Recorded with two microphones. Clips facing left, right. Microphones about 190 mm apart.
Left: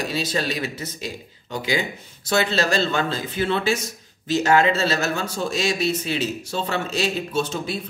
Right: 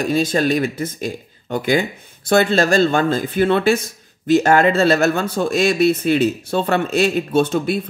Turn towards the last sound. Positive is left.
turn(degrees=-55)  # may be behind; listen again after turning